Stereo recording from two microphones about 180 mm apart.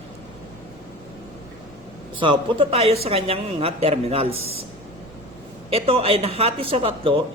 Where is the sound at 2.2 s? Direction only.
30° right (ahead or behind).